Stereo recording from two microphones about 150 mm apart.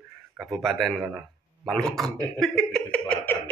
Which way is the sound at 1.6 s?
Centre (ahead or behind).